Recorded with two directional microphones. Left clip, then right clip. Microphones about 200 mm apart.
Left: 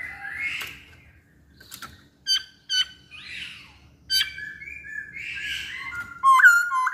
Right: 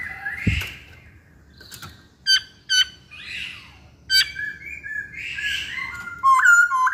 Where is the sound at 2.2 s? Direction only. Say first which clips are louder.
Right 6 dB; 15° right (ahead or behind).